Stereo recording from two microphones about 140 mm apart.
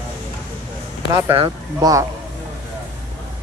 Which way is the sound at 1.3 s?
35° right (ahead or behind).